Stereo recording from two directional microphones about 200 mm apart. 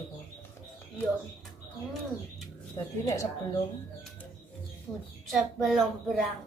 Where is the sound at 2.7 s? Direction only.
15° left (ahead or behind).